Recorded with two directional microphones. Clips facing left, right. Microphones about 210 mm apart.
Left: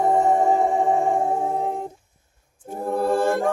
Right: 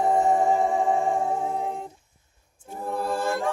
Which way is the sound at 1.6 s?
45° left (ahead or behind).